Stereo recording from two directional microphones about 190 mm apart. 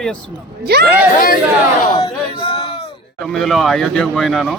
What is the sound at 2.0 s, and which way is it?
Speech, 25° left (ahead or behind).